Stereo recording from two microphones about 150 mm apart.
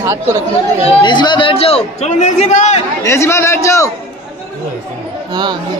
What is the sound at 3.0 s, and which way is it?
Speech, 20° left (ahead or behind).